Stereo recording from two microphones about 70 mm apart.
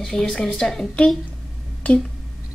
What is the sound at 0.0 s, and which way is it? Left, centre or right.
A woman's voice, centre.